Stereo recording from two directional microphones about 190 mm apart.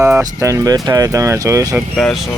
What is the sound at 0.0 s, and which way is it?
Speech, 15° right (ahead or behind).